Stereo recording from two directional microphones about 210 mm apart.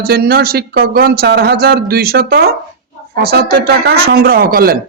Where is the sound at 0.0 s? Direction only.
45° right (ahead or behind).